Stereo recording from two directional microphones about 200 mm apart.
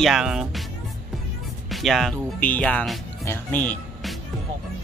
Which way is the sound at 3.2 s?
10° left (ahead or behind).